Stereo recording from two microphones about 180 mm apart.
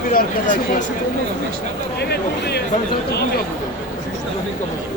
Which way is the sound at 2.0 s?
65° left (ahead or behind).